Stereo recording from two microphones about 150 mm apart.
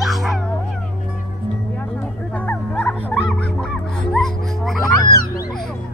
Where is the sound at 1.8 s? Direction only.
10° left (ahead or behind).